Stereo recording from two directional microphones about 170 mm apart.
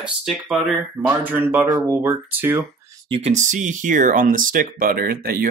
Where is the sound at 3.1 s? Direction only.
40° right (ahead or behind).